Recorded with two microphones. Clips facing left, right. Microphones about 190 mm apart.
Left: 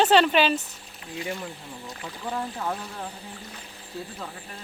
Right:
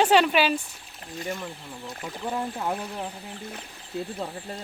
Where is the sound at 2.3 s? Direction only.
10° right (ahead or behind).